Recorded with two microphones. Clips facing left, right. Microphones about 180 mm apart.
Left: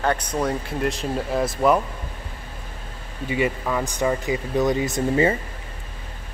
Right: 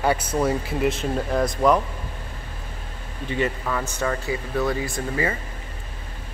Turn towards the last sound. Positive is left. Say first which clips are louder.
# left 6 dB
turn(degrees=25)  # may be behind; listen again after turning